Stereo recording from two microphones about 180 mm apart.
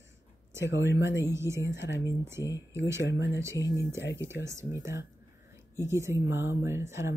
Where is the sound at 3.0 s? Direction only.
75° left (ahead or behind).